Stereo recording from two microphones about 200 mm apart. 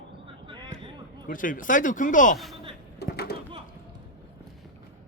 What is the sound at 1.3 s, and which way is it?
A man's voice, 45° left (ahead or behind).